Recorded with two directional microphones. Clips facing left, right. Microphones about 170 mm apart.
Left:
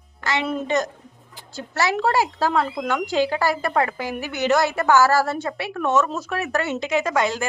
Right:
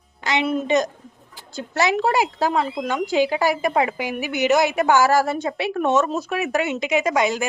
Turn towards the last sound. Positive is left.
turn(degrees=-15)  # may be behind; listen again after turning